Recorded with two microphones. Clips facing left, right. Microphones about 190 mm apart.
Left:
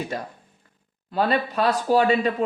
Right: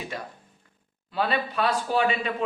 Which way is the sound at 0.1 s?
45° left (ahead or behind).